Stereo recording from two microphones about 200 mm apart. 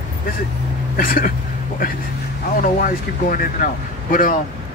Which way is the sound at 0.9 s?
45° left (ahead or behind).